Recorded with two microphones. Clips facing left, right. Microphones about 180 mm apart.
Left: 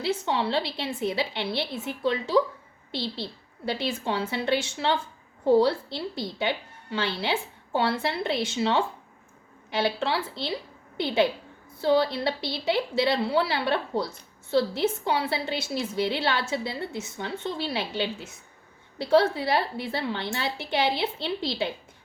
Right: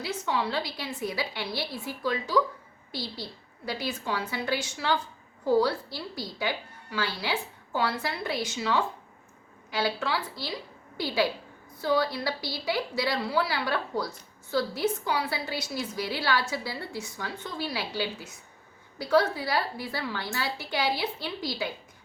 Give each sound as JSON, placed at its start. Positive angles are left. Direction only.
{"t": 0.0, "sound": "a woman's voice", "side_deg": 30}